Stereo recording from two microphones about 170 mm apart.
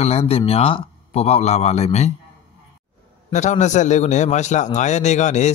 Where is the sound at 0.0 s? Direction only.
35° left (ahead or behind).